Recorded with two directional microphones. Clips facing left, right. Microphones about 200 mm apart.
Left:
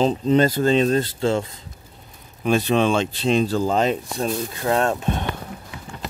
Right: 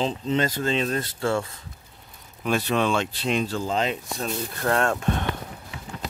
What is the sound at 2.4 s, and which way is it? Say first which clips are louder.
Speech: left 5 dB; 25° left (ahead or behind).